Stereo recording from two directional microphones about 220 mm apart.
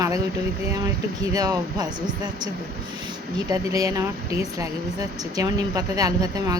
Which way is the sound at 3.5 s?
15° right (ahead or behind).